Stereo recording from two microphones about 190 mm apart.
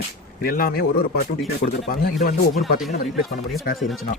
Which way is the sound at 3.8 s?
Centre (ahead or behind).